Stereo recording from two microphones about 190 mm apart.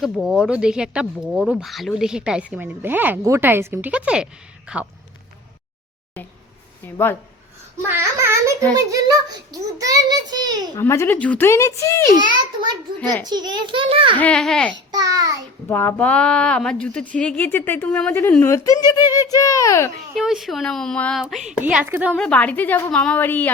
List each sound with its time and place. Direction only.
0.0 s speech: 5° right (ahead or behind)
6.8 s speech: 10° left (ahead or behind)
8.2 s a sound: 15° right (ahead or behind)
8.7 s a child's voice: 20° right (ahead or behind)
10.8 s speech: 15° left (ahead or behind)
12.1 s a child's voice: 20° right (ahead or behind)
14.2 s speech: 5° left (ahead or behind)
14.9 s a child's voice: 20° right (ahead or behind)
15.7 s speech: 10° left (ahead or behind)
20.1 s a woman's voice: centre (ahead or behind)
22.1 s speech: 5° left (ahead or behind)